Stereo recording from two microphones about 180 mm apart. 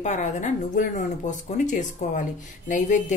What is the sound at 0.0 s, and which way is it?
Speech, 40° left (ahead or behind).